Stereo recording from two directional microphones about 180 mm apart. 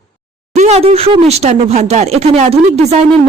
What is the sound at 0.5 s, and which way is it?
Speech, 40° right (ahead or behind).